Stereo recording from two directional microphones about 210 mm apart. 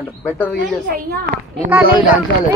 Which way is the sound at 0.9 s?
40° right (ahead or behind).